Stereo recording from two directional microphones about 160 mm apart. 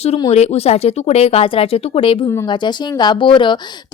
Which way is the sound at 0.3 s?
40° left (ahead or behind).